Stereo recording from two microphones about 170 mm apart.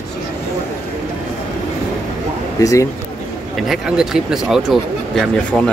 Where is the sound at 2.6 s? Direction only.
20° left (ahead or behind).